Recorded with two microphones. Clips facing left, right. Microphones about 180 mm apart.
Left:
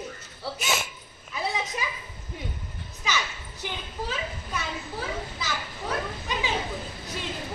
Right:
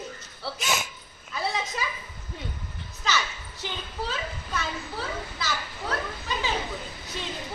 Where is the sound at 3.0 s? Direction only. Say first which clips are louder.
Right 1 dB; 10° left (ahead or behind).